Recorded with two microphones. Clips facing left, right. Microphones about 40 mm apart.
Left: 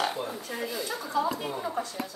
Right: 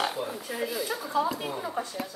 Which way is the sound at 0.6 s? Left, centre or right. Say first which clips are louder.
Right 3 dB; centre.